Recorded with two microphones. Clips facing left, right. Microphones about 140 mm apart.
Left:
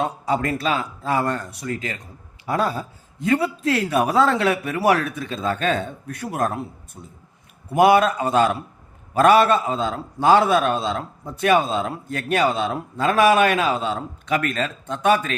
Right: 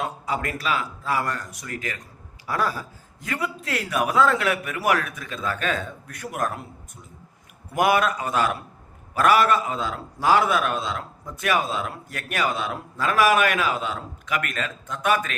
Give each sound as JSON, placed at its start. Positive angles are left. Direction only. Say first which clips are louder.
{"t": 0.0, "sound": "a man's voice", "louder": "left 5 dB", "side_deg": 35}